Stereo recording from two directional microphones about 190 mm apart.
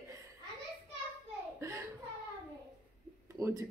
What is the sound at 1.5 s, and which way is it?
Speech, 15° right (ahead or behind).